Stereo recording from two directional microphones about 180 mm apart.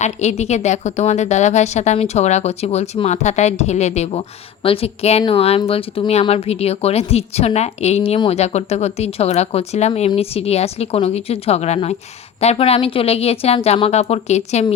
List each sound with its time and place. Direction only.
0.0 s speech: 40° left (ahead or behind)